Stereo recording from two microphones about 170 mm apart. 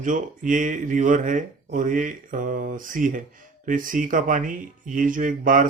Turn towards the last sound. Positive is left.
turn(degrees=-50)  # may be behind; listen again after turning